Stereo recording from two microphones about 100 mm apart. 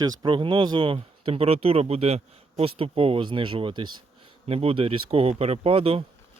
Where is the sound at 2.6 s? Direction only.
70° right (ahead or behind).